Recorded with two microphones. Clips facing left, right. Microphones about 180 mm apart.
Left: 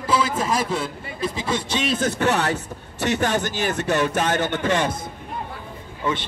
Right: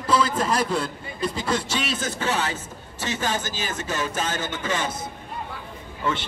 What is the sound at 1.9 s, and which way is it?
Speech, 60° left (ahead or behind).